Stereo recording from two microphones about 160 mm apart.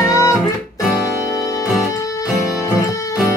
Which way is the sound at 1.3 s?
20° left (ahead or behind).